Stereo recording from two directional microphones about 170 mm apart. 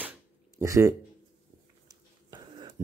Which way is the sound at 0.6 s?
15° right (ahead or behind).